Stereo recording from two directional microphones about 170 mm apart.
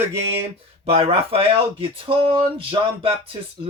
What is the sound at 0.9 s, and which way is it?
Speech, 35° right (ahead or behind).